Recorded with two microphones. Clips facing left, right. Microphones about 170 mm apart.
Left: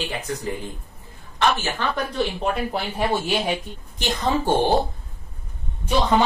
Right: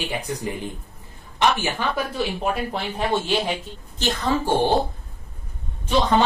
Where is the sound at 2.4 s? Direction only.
5° left (ahead or behind).